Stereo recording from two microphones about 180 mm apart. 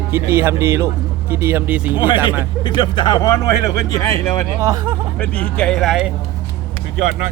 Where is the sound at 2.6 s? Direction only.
25° left (ahead or behind).